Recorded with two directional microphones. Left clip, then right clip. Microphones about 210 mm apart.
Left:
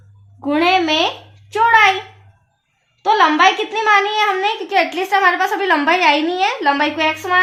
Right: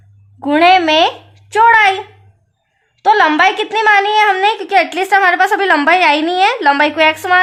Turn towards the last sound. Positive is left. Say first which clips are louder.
# right 5 dB
turn(degrees=-50)  # may be behind; listen again after turning